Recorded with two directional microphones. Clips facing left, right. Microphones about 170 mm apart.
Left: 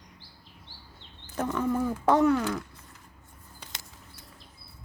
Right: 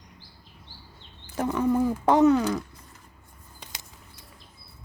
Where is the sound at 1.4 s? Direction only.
15° right (ahead or behind).